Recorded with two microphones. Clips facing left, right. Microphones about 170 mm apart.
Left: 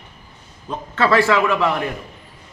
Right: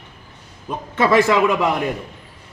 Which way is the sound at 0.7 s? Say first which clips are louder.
Right 1 dB; 15° right (ahead or behind).